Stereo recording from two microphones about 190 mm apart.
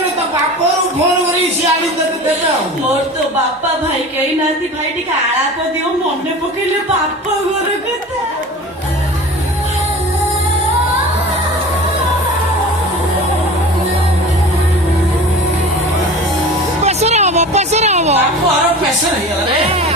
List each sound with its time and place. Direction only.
16.8 s music: 35° right (ahead or behind)